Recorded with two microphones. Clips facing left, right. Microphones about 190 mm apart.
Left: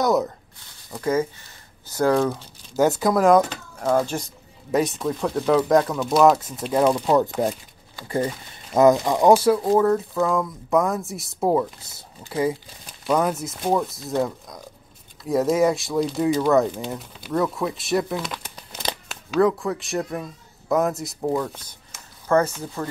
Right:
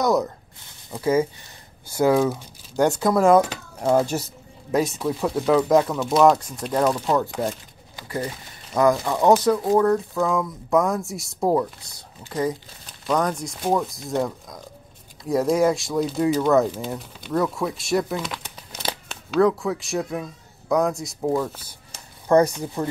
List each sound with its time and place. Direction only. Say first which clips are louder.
0.0 s speech: even; centre (ahead or behind)
2.7 s speech: even; 5° left (ahead or behind)
7.2 s speech: left 3 dB; 15° left (ahead or behind)
8.7 s speech: left 3 dB; 20° left (ahead or behind); by 13.9 s centre (ahead or behind)
15.2 s speech: even; centre (ahead or behind); by 22.8 s 15° right (ahead or behind)